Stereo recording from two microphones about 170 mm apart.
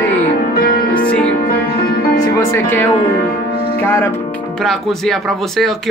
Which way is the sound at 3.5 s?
35° right (ahead or behind).